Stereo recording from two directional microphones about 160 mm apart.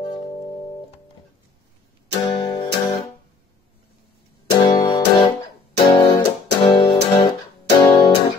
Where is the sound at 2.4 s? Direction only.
30° left (ahead or behind).